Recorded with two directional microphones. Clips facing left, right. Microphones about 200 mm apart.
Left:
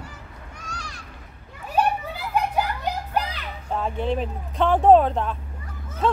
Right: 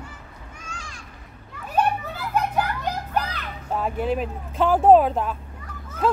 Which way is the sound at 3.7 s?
5° right (ahead or behind).